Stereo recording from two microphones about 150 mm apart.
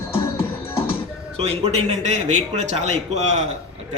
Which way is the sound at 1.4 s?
45° right (ahead or behind).